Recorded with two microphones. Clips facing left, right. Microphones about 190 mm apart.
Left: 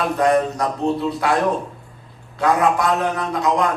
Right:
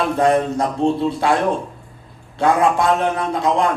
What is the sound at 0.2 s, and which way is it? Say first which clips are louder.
Speech: right 1 dB; 25° right (ahead or behind).